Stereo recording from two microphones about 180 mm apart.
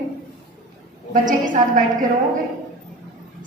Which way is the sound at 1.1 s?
45° right (ahead or behind).